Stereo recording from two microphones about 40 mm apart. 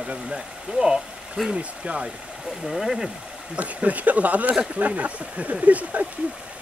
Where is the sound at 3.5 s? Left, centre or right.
Right.